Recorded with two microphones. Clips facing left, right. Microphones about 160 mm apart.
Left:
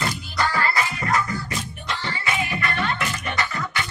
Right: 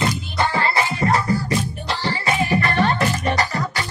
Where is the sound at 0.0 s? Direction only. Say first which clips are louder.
Right 4 dB; 25° right (ahead or behind).